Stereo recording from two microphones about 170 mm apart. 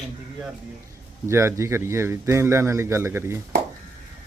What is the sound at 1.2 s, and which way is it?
A man's voice, 15° right (ahead or behind).